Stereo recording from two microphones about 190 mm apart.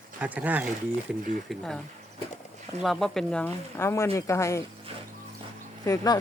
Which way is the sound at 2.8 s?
Centre (ahead or behind).